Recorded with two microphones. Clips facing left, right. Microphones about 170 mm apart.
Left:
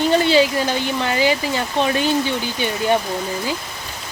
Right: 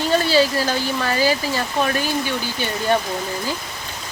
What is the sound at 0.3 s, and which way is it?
Speech, 20° left (ahead or behind).